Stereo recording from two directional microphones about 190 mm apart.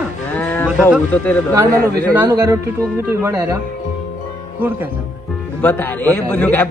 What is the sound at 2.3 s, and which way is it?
A man's voice, 15° right (ahead or behind).